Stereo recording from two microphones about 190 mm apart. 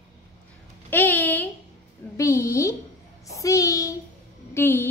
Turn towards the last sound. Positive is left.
turn(degrees=10)  # may be behind; listen again after turning